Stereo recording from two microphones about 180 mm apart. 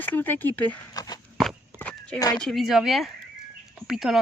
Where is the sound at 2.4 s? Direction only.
Centre (ahead or behind).